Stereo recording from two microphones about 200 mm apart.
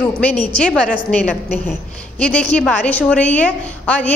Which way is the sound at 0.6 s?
5° left (ahead or behind).